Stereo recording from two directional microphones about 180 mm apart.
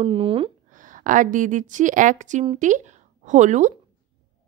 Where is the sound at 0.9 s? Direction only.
45° right (ahead or behind).